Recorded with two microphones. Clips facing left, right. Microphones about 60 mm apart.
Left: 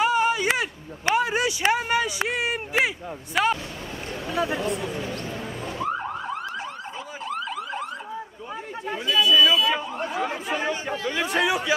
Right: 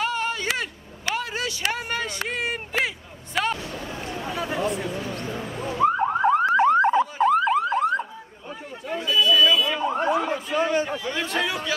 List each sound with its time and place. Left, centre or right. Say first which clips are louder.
0.0 s a sound: left 5 dB; centre
3.4 s speech: left 3 dB; centre
4.4 s speech: left 1 dB; centre
5.8 s car alarm: right 9 dB; right
9.1 s a sound: even; centre
9.8 s chatter: right 8 dB; right
10.2 s chatter: right 2 dB; centre